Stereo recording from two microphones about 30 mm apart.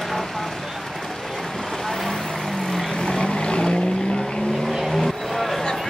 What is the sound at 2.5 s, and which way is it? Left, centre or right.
Vehicle, centre.